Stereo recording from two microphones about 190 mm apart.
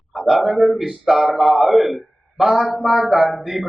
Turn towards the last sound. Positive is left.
turn(degrees=0)  # may be behind; listen again after turning